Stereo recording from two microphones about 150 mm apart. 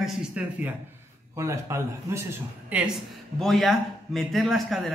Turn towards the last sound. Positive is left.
turn(degrees=0)  # may be behind; listen again after turning